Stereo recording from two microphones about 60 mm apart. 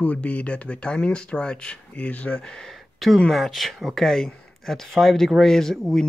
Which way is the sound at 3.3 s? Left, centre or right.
Centre.